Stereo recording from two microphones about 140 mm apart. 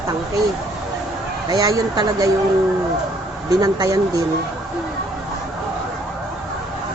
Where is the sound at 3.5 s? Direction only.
25° right (ahead or behind).